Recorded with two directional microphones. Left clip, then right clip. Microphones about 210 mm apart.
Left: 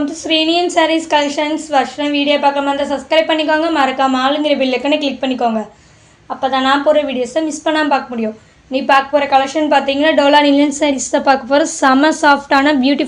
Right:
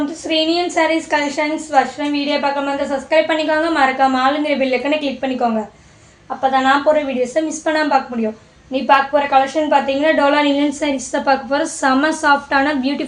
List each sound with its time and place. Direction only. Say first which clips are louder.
0.3 s a woman's voice: left 3 dB; 35° left (ahead or behind)
6.4 s a woman's voice: left 1 dB; 30° left (ahead or behind)